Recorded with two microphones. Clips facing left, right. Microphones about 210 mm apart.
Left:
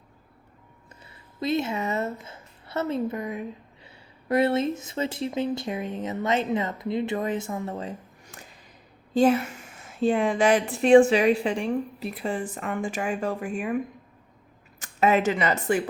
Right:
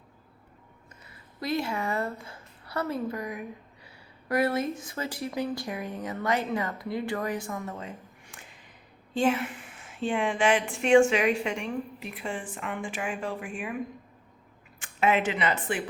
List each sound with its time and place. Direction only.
1.1 s a woman's voice: 25° left (ahead or behind); by 13.7 s 40° left (ahead or behind)
14.8 s speech: 40° left (ahead or behind)